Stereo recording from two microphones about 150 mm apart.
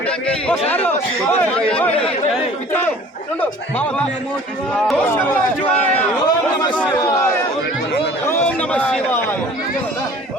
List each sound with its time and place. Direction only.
0.7 s speech: 15° left (ahead or behind)
4.7 s speech: 10° left (ahead or behind)
6.2 s chatter: 30° left (ahead or behind)
7.0 s a man's voice: 25° left (ahead or behind)
8.3 s a man's voice: 10° left (ahead or behind)